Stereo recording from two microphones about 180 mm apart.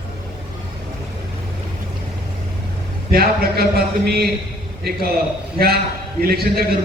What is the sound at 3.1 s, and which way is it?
A man's voice, 55° right (ahead or behind).